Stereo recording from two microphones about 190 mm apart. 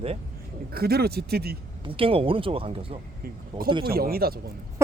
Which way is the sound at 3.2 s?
50° right (ahead or behind).